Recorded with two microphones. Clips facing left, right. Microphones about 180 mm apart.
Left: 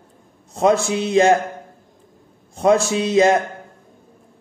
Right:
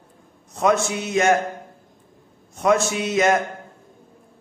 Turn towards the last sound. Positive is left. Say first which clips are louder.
# left 4 dB
turn(degrees=30)  # may be behind; listen again after turning